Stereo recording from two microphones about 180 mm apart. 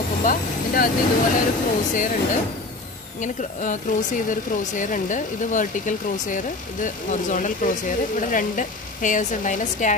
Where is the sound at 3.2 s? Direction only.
45° left (ahead or behind).